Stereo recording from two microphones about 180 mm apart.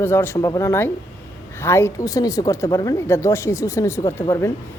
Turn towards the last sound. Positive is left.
turn(degrees=15)  # may be behind; listen again after turning